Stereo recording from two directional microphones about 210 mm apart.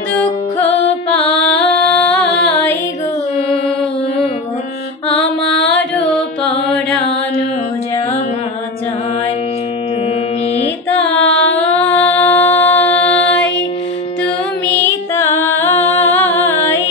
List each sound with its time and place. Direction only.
1.6 s music: 5° left (ahead or behind)
5.5 s music: 60° left (ahead or behind)
5.9 s carnatic music: 5° left (ahead or behind)
11.1 s a sound: 60° left (ahead or behind)
11.8 s a sound: 30° left (ahead or behind)
12.1 s music: 10° left (ahead or behind)
14.8 s music: 10° left (ahead or behind)